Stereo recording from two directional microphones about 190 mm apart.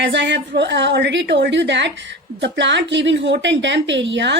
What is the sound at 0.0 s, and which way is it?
A woman's voice, 65° right (ahead or behind).